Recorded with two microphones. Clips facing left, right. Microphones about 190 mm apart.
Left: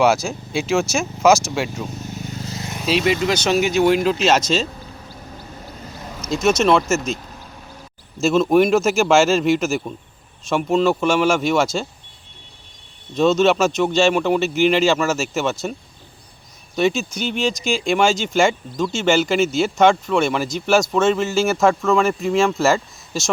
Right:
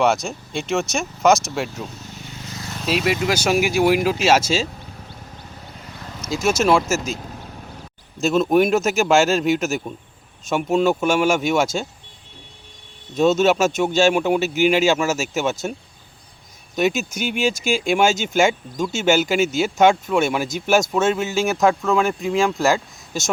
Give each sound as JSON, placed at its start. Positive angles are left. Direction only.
{"t": 0.0, "sound": "speech", "side_deg": 0}
{"t": 2.2, "sound": "vehicle", "side_deg": 40}
{"t": 2.6, "sound": "vehicle", "side_deg": 20}
{"t": 2.8, "sound": "speech", "side_deg": 0}
{"t": 6.2, "sound": "speech", "side_deg": -5}
{"t": 8.2, "sound": "speech", "side_deg": 0}
{"t": 13.1, "sound": "speech", "side_deg": -5}
{"t": 16.7, "sound": "speech", "side_deg": -5}